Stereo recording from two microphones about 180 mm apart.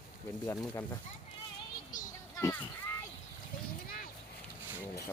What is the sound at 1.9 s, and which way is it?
Children playing, 20° left (ahead or behind).